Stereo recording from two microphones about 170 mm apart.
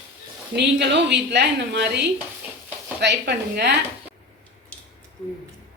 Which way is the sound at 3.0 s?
70° right (ahead or behind).